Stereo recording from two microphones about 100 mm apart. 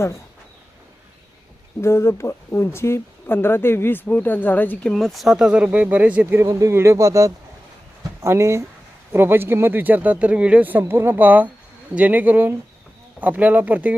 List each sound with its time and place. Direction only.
1.8 s speech: 25° left (ahead or behind)
4.9 s speech: centre (ahead or behind); by 6.4 s 15° right (ahead or behind)
6.5 s speech: 30° right (ahead or behind); by 13.9 s 15° right (ahead or behind)